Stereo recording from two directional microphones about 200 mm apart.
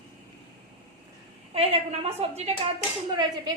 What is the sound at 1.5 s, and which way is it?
Speech, 30° right (ahead or behind).